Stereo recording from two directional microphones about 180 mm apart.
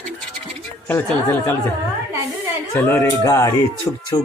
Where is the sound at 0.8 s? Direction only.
10° left (ahead or behind).